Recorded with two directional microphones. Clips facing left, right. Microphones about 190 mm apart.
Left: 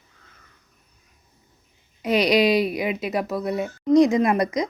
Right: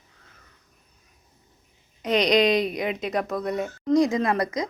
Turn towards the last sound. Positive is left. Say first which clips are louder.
# left 4 dB
turn(degrees=20)  # may be behind; listen again after turning